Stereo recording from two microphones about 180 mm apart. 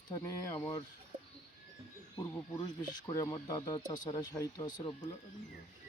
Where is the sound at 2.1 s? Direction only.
20° left (ahead or behind).